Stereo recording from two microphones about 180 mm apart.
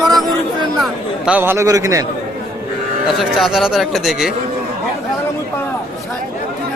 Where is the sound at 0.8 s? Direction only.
10° right (ahead or behind).